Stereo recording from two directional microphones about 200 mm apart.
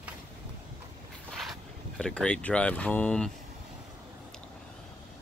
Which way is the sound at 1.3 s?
Centre (ahead or behind).